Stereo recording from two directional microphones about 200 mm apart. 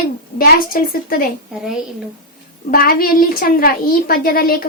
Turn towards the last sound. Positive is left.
turn(degrees=45)  # may be behind; listen again after turning